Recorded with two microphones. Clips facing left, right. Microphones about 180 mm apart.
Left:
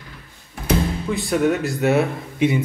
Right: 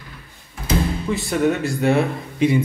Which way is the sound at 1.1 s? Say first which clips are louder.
Left 1 dB; centre (ahead or behind).